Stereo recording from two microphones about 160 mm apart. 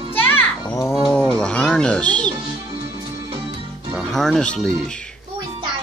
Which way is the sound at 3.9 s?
Centre (ahead or behind).